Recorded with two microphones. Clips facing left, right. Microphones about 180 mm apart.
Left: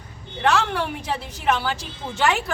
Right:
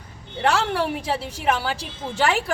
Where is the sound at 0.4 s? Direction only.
30° right (ahead or behind).